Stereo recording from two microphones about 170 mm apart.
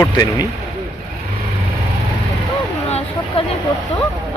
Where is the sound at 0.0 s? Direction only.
20° left (ahead or behind).